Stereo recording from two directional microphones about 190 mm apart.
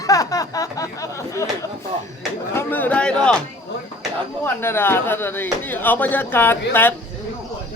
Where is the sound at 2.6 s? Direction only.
10° left (ahead or behind).